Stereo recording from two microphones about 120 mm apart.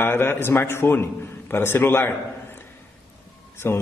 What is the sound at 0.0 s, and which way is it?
A man's voice, 20° left (ahead or behind).